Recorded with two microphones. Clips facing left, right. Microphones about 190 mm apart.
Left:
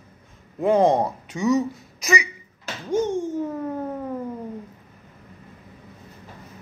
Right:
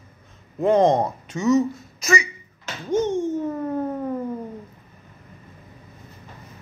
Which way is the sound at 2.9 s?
15° left (ahead or behind).